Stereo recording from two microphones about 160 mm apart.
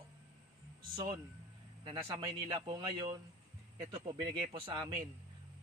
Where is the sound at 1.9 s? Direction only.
25° right (ahead or behind).